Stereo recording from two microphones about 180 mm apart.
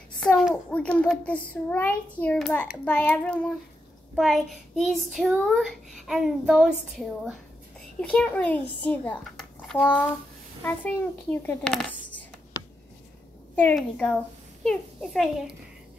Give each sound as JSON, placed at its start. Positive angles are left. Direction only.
{"t": 0.2, "sound": "a child's voice", "side_deg": 0}
{"t": 13.6, "sound": "a child's voice", "side_deg": 10}